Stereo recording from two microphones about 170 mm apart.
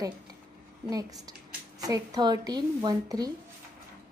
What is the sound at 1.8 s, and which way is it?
Speech, 20° right (ahead or behind).